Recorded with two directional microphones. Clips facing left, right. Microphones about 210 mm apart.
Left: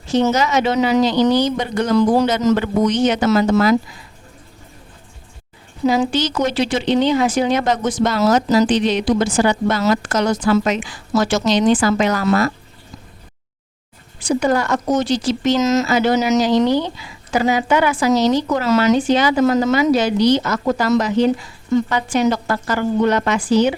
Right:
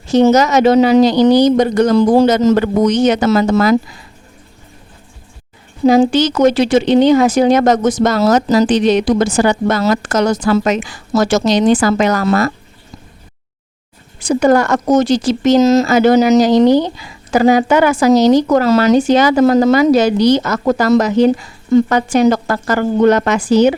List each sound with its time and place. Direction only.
0.1 s speech: 40° right (ahead or behind)
2.0 s speech: 30° right (ahead or behind)
2.6 s speech: 40° right (ahead or behind)
5.8 s speech: 30° right (ahead or behind)
6.4 s a woman's voice: 45° right (ahead or behind)
14.2 s a woman's voice: 45° right (ahead or behind)